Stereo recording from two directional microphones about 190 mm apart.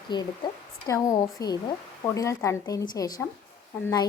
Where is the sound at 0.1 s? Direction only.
25° left (ahead or behind).